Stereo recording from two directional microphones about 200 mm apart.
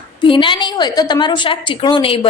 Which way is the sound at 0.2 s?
25° left (ahead or behind).